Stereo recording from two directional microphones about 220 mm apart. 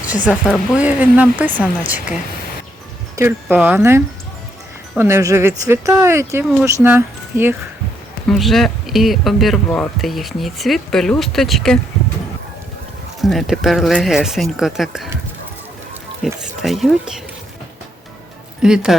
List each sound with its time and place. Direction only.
0.3 s speech: centre (ahead or behind)
3.2 s speech: 10° right (ahead or behind)
13.2 s speech: centre (ahead or behind)
16.2 s speech: centre (ahead or behind)
18.6 s speech: 5° right (ahead or behind)